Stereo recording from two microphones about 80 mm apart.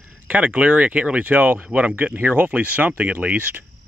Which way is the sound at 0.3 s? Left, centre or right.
Centre.